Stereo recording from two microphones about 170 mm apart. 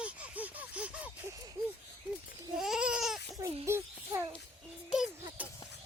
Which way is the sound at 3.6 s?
15° right (ahead or behind).